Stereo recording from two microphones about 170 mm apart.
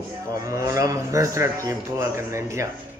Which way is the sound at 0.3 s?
20° right (ahead or behind).